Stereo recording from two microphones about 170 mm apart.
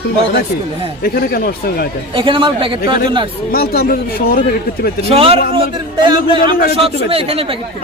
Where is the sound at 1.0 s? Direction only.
65° left (ahead or behind).